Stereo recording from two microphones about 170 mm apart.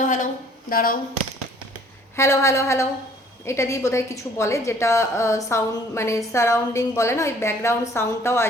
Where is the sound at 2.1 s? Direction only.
15° left (ahead or behind).